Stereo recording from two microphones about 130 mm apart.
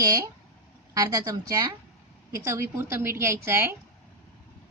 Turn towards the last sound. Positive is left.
turn(degrees=-20)  # may be behind; listen again after turning